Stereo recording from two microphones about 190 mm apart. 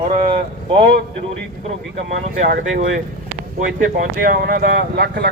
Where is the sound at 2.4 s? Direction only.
45° right (ahead or behind).